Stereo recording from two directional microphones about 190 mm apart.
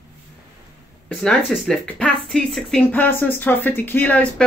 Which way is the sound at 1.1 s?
Centre (ahead or behind).